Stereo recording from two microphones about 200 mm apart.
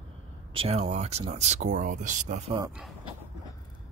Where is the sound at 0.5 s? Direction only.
30° right (ahead or behind).